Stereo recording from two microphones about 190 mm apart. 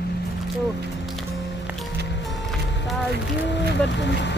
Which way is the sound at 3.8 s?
65° left (ahead or behind).